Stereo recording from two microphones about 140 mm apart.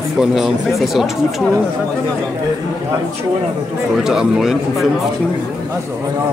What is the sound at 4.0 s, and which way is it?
Speech, 5° right (ahead or behind).